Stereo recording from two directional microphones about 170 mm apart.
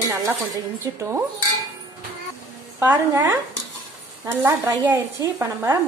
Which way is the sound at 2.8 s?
10° right (ahead or behind).